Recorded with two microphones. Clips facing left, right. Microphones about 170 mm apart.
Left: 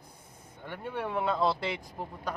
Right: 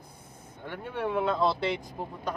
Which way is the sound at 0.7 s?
10° left (ahead or behind).